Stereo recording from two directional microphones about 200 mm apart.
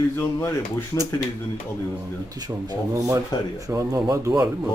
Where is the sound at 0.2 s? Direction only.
10° left (ahead or behind).